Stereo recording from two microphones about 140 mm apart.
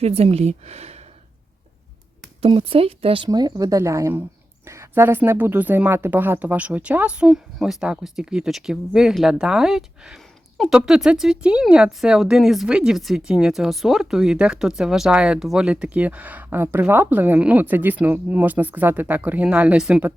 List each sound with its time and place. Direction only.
0.0 s speech: 45° right (ahead or behind)
2.4 s speech: 40° right (ahead or behind)
3.2 s speech: 25° right (ahead or behind); by 20.1 s 10° right (ahead or behind)